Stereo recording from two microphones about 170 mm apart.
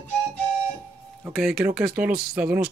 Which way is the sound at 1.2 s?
Centre (ahead or behind).